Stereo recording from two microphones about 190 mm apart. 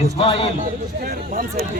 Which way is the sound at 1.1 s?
50° right (ahead or behind).